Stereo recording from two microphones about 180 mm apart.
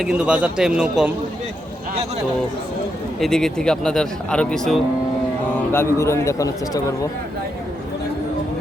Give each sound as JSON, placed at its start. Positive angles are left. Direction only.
{"t": 0.0, "sound": "a man's voice", "side_deg": -5}
{"t": 3.2, "sound": "a man's voice", "side_deg": 0}
{"t": 5.7, "sound": "a man's voice", "side_deg": 15}